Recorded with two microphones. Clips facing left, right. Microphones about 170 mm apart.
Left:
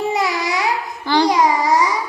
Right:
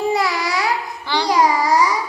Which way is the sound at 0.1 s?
20° left (ahead or behind).